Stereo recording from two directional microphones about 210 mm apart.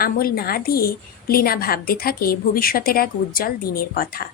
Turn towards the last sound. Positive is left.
turn(degrees=45)  # may be behind; listen again after turning